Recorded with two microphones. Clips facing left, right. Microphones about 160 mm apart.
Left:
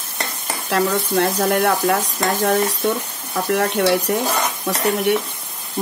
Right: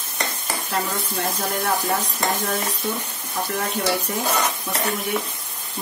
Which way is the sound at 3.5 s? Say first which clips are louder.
Left 8 dB; 70° left (ahead or behind).